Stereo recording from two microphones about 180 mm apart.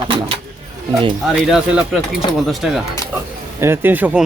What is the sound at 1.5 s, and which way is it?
Speech, 5° right (ahead or behind).